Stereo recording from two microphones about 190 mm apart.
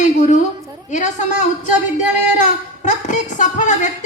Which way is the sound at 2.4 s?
40° left (ahead or behind).